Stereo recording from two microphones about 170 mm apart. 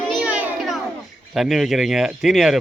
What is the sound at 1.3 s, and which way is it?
Speech, centre (ahead or behind).